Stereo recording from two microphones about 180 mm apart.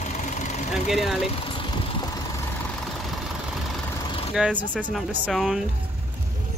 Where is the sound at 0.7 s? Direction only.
Centre (ahead or behind).